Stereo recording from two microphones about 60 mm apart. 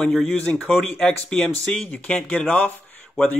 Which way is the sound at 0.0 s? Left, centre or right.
Centre.